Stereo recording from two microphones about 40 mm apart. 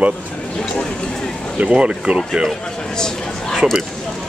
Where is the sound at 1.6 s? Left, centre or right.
Right.